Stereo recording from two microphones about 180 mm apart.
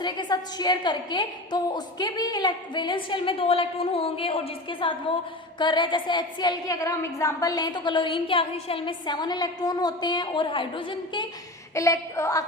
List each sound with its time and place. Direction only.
0.0 s a woman's voice: 25° left (ahead or behind)